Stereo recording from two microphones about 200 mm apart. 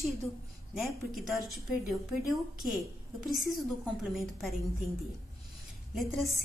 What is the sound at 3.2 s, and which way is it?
A woman's voice, centre (ahead or behind).